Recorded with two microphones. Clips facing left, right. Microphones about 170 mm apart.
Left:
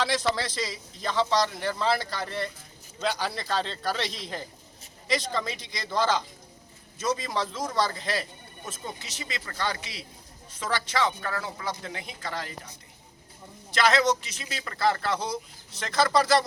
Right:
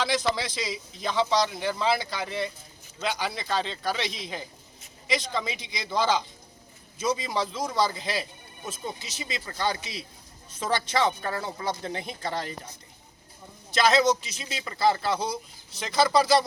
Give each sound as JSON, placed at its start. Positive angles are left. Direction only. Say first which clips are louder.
{"t": 0.0, "sound": "speech", "louder": "even", "side_deg": 0}
{"t": 7.0, "sound": "a man's voice", "louder": "right 1 dB", "side_deg": 0}
{"t": 13.7, "sound": "a man's voice", "louder": "right 2 dB", "side_deg": -15}